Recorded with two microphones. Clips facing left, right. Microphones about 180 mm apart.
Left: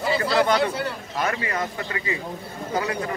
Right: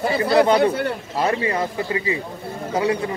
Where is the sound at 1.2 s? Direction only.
30° right (ahead or behind).